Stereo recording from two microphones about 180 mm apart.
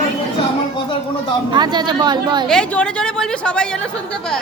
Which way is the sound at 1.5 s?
25° right (ahead or behind).